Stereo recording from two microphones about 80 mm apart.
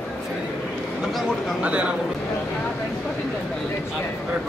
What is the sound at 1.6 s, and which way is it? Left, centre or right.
Speech, centre.